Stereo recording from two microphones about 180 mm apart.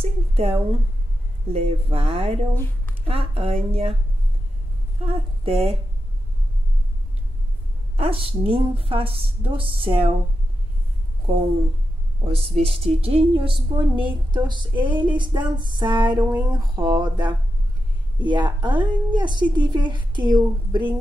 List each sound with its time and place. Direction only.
0.0 s a sound: 35° right (ahead or behind)
1.5 s a woman's voice: 35° right (ahead or behind)
5.0 s a woman's voice: 30° right (ahead or behind)
7.9 s a woman's voice: 30° right (ahead or behind)
12.3 s a woman's voice: 35° right (ahead or behind)